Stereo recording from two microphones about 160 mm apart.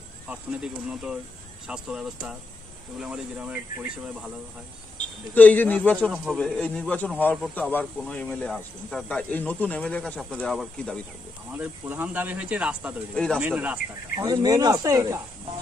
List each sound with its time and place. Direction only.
0.3 s speech: 5° right (ahead or behind)
5.3 s speech: 10° left (ahead or behind)
11.5 s speech: 10° right (ahead or behind)
13.1 s speech: 5° left (ahead or behind)
13.4 s speech: 10° right (ahead or behind)
14.1 s speech: 25° right (ahead or behind)